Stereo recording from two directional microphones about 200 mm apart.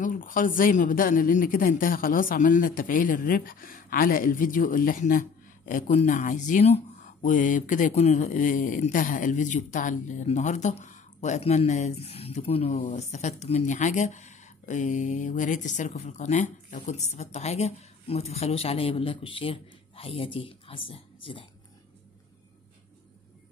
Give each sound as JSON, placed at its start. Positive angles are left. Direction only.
{"t": 0.0, "sound": "speech", "side_deg": 40}